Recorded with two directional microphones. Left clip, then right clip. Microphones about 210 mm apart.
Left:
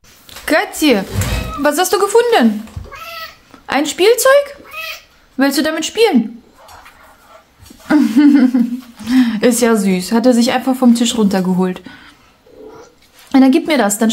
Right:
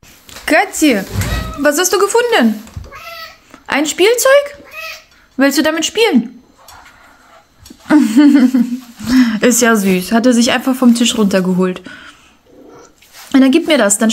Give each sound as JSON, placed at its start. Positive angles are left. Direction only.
{"t": 0.5, "sound": "speech", "side_deg": 0}
{"t": 3.5, "sound": "speech", "side_deg": 0}
{"t": 7.8, "sound": "speech", "side_deg": -5}
{"t": 13.3, "sound": "speech", "side_deg": 0}